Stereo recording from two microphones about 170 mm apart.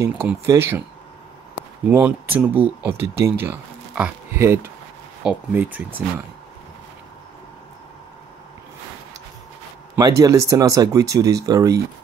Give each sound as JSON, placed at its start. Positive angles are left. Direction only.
{"t": 0.0, "sound": "speech", "side_deg": -15}
{"t": 1.9, "sound": "speech", "side_deg": -10}
{"t": 9.9, "sound": "speech", "side_deg": -20}